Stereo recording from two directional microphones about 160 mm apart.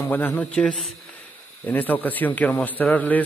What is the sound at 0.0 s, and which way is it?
A man's voice, 10° left (ahead or behind).